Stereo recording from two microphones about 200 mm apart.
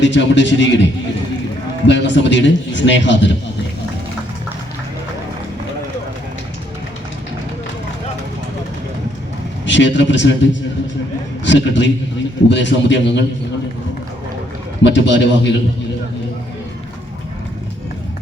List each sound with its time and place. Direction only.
0.0 s a man's voice: 65° left (ahead or behind)
1.9 s a man's voice: 65° left (ahead or behind)
9.6 s a man's voice: 65° left (ahead or behind)
14.8 s a man's voice: 65° left (ahead or behind)